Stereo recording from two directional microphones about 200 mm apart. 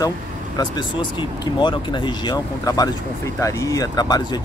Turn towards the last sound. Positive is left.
turn(degrees=20)  # may be behind; listen again after turning